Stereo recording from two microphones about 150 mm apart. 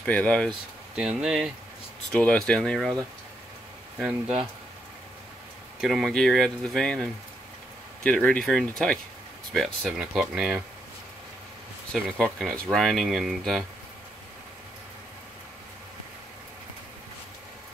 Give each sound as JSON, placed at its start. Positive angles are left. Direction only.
{"t": 0.0, "sound": "speech", "side_deg": 10}
{"t": 0.9, "sound": "speech", "side_deg": -5}
{"t": 2.1, "sound": "speech", "side_deg": 5}
{"t": 5.8, "sound": "speech", "side_deg": 0}
{"t": 11.9, "sound": "speech", "side_deg": 5}